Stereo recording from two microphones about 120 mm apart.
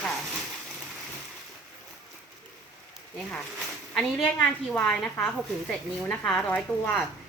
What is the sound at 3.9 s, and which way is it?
A woman's voice, 5° left (ahead or behind).